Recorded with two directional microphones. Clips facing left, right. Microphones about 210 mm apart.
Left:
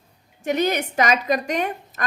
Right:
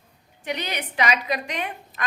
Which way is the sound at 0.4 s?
45° left (ahead or behind).